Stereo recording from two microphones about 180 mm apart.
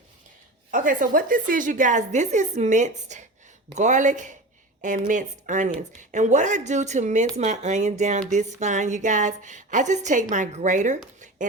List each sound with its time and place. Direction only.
0.7 s a woman's voice: 50° right (ahead or behind)